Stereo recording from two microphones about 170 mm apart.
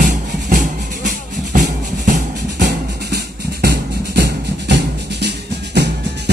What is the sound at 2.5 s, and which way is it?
Music, 75° right (ahead or behind).